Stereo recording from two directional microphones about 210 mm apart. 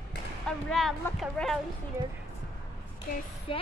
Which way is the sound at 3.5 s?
25° left (ahead or behind).